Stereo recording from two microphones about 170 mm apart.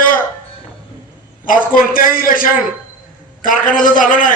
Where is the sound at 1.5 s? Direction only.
55° left (ahead or behind).